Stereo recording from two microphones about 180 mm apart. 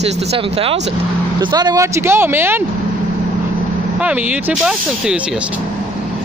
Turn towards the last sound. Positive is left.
turn(degrees=-5)  # may be behind; listen again after turning